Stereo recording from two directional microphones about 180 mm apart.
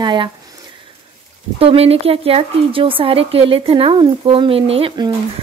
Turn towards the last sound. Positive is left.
turn(degrees=-30)  # may be behind; listen again after turning